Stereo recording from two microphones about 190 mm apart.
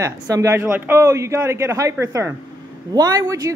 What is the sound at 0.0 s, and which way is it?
Speech, 15° right (ahead or behind).